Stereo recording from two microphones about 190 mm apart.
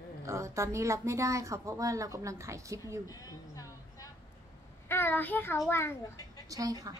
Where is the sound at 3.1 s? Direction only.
20° left (ahead or behind).